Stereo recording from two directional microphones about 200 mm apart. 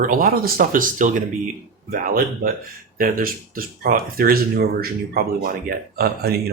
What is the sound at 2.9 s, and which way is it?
Speech, 45° right (ahead or behind).